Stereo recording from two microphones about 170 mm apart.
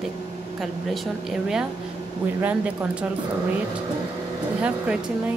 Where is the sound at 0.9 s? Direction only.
Centre (ahead or behind).